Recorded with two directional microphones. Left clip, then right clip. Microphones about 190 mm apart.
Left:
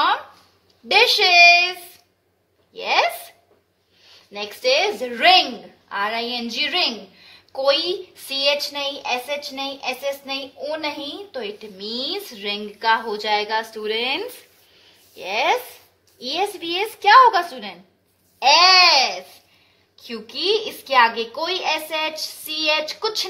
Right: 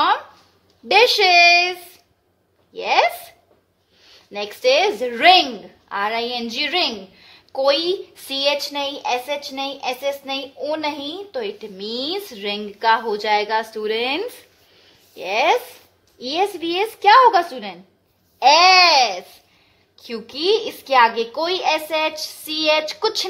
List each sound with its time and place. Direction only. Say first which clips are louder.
0.8 s a woman's voice: right 2 dB; 45° right (ahead or behind)
2.7 s hiccup: right 2 dB; 40° right (ahead or behind)
4.0 s a woman's voice: right 3 dB; 55° right (ahead or behind)
20.0 s a woman's voice: right 1 dB; 50° right (ahead or behind)